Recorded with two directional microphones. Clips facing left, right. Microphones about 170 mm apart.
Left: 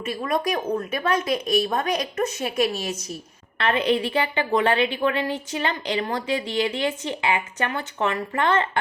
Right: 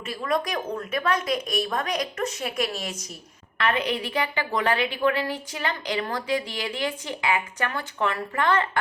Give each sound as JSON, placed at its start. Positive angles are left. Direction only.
{"t": 0.0, "sound": "a woman's voice", "side_deg": 25}